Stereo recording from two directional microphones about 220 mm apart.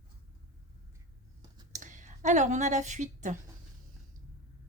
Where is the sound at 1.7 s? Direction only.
35° right (ahead or behind).